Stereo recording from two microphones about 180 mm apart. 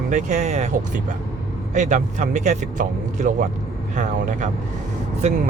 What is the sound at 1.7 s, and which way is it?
Speech, 40° right (ahead or behind).